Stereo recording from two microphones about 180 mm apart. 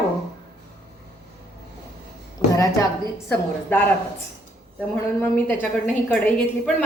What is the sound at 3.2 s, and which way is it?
Speech, 10° left (ahead or behind).